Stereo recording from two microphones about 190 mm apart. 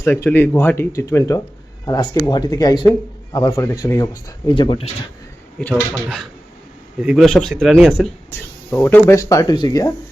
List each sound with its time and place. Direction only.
0.0 s speech: 10° left (ahead or behind)
5.5 s speech: 5° left (ahead or behind); by 9.9 s 20° left (ahead or behind)